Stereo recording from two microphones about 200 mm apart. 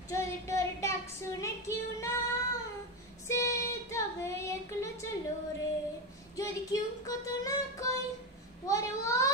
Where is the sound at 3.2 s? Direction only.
15° left (ahead or behind).